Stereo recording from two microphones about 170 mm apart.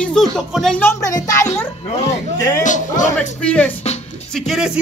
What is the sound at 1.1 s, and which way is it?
Speech, 20° left (ahead or behind).